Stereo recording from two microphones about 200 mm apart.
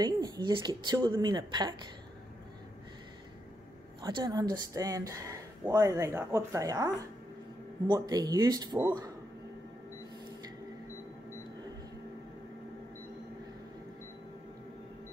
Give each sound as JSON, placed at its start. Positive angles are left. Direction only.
{"t": 0.0, "sound": "speech", "side_deg": -20}
{"t": 4.0, "sound": "speech", "side_deg": -20}